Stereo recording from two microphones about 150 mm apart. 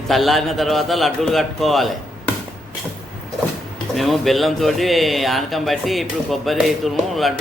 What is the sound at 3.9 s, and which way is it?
Speech, centre (ahead or behind).